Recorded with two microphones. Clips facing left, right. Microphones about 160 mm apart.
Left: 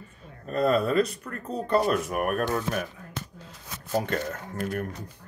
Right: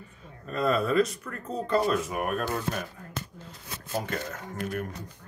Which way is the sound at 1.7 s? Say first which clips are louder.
Left 2 dB; 60° left (ahead or behind).